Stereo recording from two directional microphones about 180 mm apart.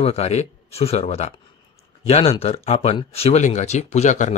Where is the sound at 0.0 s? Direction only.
35° left (ahead or behind).